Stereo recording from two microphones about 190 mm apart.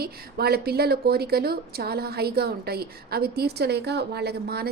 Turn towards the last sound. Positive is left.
turn(degrees=-55)  # may be behind; listen again after turning